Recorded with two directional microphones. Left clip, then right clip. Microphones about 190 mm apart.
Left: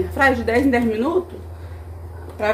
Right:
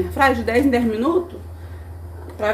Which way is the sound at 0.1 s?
15° right (ahead or behind).